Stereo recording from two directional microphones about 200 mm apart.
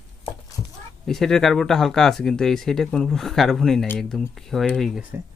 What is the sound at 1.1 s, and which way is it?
Speech, centre (ahead or behind).